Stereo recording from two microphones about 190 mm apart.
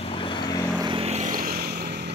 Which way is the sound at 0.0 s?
25° left (ahead or behind).